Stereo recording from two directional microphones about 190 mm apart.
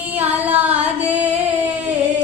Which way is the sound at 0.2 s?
10° right (ahead or behind).